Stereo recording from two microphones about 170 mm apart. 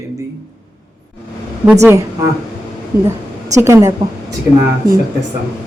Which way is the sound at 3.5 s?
15° right (ahead or behind).